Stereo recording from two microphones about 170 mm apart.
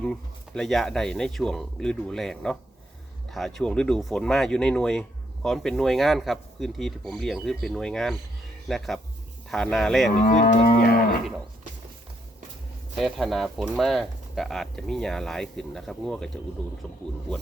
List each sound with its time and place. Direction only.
0.0 s speech: 5° left (ahead or behind)
10.2 s livestock: 60° left (ahead or behind)
13.0 s speech: centre (ahead or behind)